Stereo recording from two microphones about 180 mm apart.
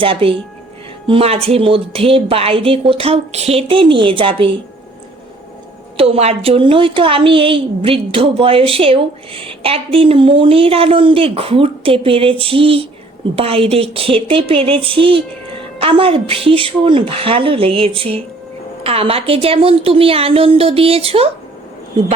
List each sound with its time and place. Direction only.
0.0 s a woman's voice: 30° right (ahead or behind)
6.0 s a woman's voice: 35° right (ahead or behind)